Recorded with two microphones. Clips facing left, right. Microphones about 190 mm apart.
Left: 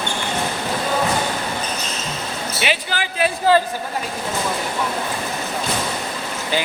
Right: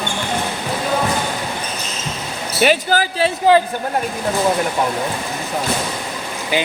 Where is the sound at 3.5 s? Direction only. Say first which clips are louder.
Right 3 dB; 15° right (ahead or behind).